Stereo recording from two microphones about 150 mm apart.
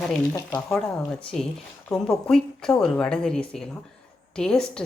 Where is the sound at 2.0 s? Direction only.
5° left (ahead or behind).